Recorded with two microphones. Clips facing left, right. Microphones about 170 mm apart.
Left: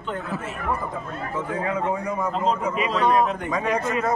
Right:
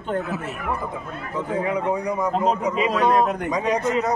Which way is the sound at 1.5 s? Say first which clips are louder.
Right 3 dB; 20° right (ahead or behind).